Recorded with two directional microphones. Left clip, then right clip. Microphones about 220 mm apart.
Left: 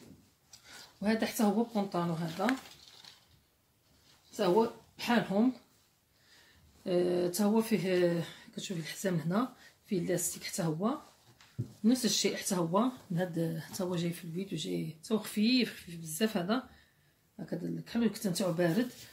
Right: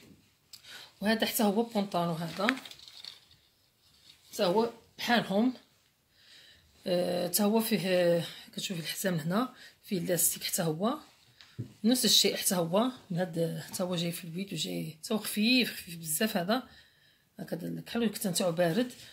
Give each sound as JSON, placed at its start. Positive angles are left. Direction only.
{"t": 1.0, "sound": "speech", "side_deg": -45}
{"t": 4.4, "sound": "speech", "side_deg": -50}
{"t": 6.8, "sound": "speech", "side_deg": -45}